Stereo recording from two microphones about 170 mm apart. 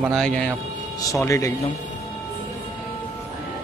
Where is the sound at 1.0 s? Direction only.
20° left (ahead or behind).